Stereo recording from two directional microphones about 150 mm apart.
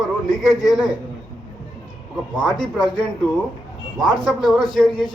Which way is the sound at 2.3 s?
5° left (ahead or behind).